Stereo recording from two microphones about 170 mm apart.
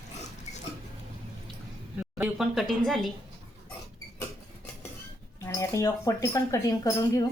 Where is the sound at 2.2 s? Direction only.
Centre (ahead or behind).